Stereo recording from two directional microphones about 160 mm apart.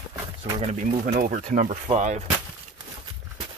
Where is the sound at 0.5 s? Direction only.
45° right (ahead or behind).